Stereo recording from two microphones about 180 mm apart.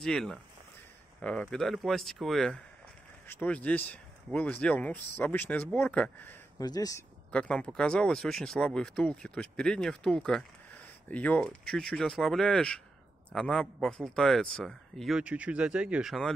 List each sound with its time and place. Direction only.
0.0 s speech: 5° left (ahead or behind)
6.6 s speech: 20° left (ahead or behind)
7.2 s speech: 5° left (ahead or behind)